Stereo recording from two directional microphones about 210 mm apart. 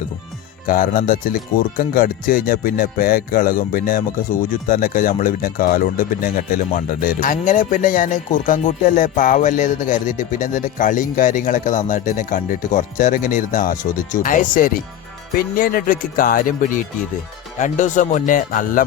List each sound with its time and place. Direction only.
0.7 s speech: 45° left (ahead or behind)